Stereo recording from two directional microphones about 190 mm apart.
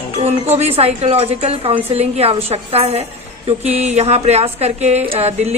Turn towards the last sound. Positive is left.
turn(degrees=-35)  # may be behind; listen again after turning